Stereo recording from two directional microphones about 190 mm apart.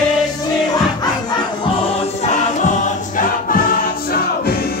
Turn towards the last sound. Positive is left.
turn(degrees=40)  # may be behind; listen again after turning